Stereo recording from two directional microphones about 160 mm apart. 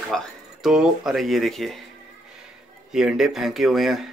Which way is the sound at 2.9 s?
5° right (ahead or behind).